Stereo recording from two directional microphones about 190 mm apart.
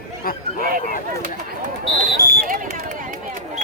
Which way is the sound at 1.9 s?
50° right (ahead or behind).